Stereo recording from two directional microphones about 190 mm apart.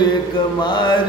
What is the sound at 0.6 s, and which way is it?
Mantra, 25° left (ahead or behind).